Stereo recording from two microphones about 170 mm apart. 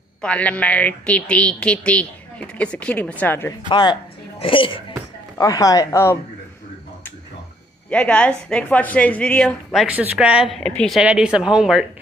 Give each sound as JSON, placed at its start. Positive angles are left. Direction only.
{"t": 0.2, "sound": "speech", "side_deg": 5}
{"t": 3.6, "sound": "speech", "side_deg": 25}
{"t": 5.4, "sound": "speech", "side_deg": 20}
{"t": 7.9, "sound": "a woman's voice", "side_deg": 10}